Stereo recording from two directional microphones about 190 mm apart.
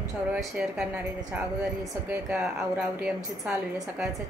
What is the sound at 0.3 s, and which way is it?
Speech, 5° right (ahead or behind).